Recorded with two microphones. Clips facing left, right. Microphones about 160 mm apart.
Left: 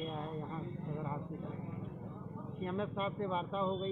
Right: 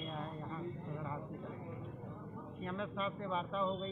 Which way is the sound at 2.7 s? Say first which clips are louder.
Left 3 dB; 30° left (ahead or behind).